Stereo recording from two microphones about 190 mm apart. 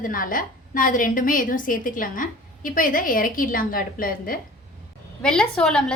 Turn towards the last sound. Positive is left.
turn(degrees=5)  # may be behind; listen again after turning